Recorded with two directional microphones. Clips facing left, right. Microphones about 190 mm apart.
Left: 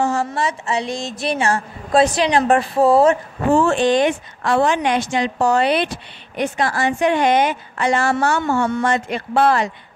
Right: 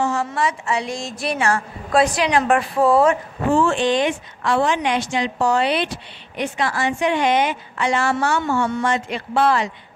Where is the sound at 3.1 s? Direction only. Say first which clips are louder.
Left 3 dB; 40° left (ahead or behind).